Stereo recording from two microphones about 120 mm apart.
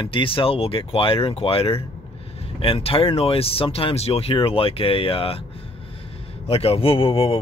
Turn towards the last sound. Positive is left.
turn(degrees=50)  # may be behind; listen again after turning